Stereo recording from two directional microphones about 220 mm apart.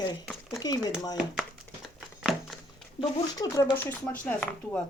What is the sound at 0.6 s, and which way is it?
Speech, 15° left (ahead or behind).